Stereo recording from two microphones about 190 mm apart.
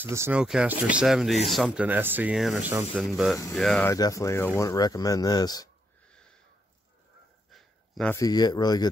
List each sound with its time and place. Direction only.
0.0 s speech: 10° right (ahead or behind); by 3.9 s 5° left (ahead or behind)
3.9 s speech: 15° left (ahead or behind)
7.5 s a sound: centre (ahead or behind)
8.1 s speech: 20° left (ahead or behind)